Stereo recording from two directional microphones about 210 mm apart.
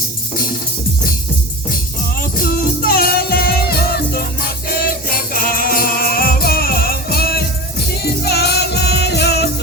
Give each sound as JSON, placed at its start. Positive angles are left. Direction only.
{"t": 2.3, "sound": "music", "side_deg": 45}